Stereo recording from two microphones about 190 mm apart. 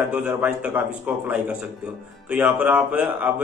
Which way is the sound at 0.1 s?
5° right (ahead or behind).